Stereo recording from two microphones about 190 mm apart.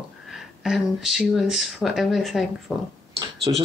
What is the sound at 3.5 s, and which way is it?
Speech, 20° right (ahead or behind).